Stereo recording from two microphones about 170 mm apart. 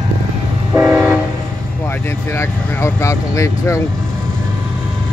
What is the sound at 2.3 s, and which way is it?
Speech, 15° left (ahead or behind).